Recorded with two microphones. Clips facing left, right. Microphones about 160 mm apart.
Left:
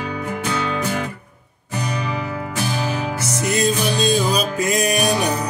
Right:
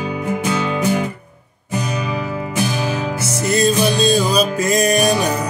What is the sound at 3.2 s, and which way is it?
Music, 15° left (ahead or behind).